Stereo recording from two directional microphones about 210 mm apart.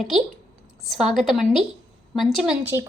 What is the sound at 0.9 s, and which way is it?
A woman's voice, centre (ahead or behind).